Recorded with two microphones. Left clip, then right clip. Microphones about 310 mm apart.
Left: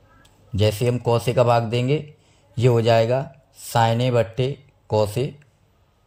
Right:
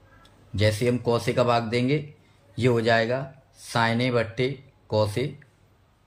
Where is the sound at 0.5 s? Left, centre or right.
Left.